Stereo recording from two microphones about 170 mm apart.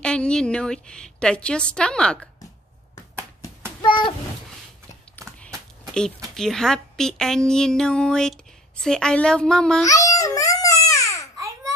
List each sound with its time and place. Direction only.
0.0 s a woman's voice: 5° left (ahead or behind)
3.8 s a sound: 30° left (ahead or behind)
6.3 s a woman's voice: centre (ahead or behind)
9.8 s babbling: 20° left (ahead or behind)
11.3 s babbling: 20° right (ahead or behind)